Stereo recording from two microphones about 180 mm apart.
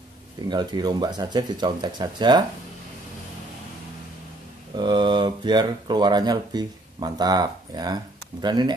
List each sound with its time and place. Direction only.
0.5 s speech: 25° right (ahead or behind)
4.7 s speech: 25° right (ahead or behind)